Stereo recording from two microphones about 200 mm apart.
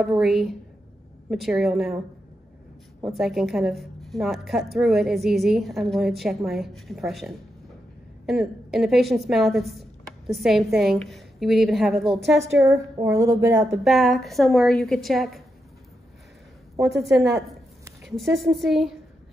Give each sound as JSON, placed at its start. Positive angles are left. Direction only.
{"t": 0.0, "sound": "a woman's voice", "side_deg": 0}
{"t": 3.2, "sound": "a woman's voice", "side_deg": 0}
{"t": 12.4, "sound": "a woman's voice", "side_deg": -15}
{"t": 13.7, "sound": "a woman's voice", "side_deg": 0}
{"t": 17.3, "sound": "a sound", "side_deg": -15}
{"t": 18.0, "sound": "a woman's voice", "side_deg": 0}